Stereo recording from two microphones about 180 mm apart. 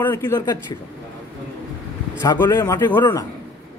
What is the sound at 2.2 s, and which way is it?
A man's voice, 20° left (ahead or behind).